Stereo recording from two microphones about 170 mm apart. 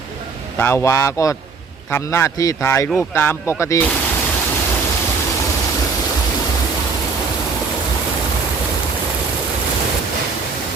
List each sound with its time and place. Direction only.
0.6 s speech: 15° left (ahead or behind)